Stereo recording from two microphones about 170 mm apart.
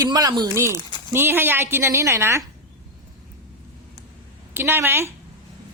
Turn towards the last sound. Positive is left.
turn(degrees=-15)  # may be behind; listen again after turning